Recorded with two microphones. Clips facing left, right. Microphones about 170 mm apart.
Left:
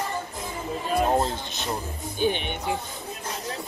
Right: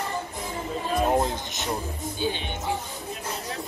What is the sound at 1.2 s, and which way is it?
Speech, 20° right (ahead or behind).